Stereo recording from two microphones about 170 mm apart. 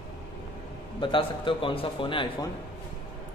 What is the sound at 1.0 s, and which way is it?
A man's voice, 30° left (ahead or behind).